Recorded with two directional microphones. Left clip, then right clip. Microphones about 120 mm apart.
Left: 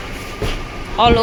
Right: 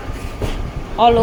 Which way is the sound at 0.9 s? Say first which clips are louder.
Right 1 dB; 15° right (ahead or behind).